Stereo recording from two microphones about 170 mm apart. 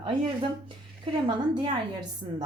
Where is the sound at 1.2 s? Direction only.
30° right (ahead or behind).